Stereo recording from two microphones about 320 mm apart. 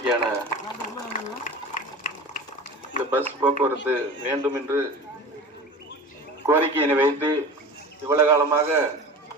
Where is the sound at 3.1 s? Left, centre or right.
Centre.